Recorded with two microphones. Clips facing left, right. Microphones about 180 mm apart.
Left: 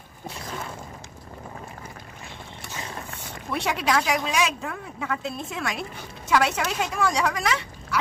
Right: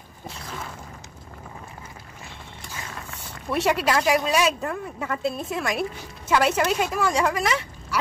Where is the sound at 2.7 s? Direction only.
25° left (ahead or behind).